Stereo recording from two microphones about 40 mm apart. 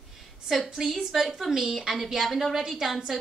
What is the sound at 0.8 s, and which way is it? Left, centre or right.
A woman's voice, centre.